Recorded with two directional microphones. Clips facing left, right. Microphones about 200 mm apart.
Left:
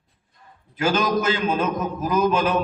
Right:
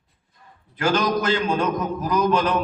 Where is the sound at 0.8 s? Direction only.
25° left (ahead or behind).